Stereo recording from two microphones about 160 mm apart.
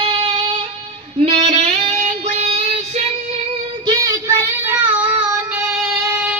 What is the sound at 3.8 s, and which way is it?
Child singing, 20° right (ahead or behind).